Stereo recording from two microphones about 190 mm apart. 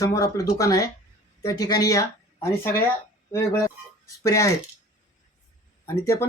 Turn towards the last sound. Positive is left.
turn(degrees=15)  # may be behind; listen again after turning